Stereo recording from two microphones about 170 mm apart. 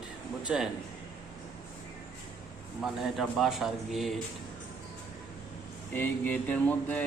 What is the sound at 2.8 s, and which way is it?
A man's voice, centre (ahead or behind).